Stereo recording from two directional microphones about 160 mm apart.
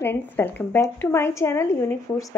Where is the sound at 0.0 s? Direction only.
15° left (ahead or behind).